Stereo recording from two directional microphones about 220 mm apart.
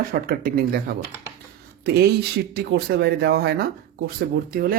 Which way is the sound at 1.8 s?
45° right (ahead or behind).